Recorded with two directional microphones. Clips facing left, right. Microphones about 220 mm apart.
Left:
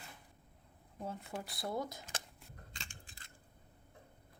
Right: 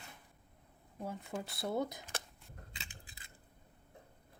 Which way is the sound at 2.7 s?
5° right (ahead or behind).